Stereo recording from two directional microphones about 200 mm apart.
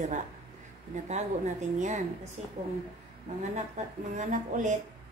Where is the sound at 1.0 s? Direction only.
35° right (ahead or behind).